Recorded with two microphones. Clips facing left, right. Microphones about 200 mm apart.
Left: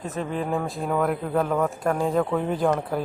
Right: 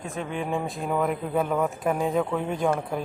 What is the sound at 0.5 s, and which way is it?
Speech, centre (ahead or behind).